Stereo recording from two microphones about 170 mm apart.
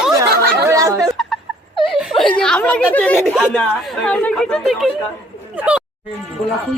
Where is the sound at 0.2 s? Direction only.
20° right (ahead or behind).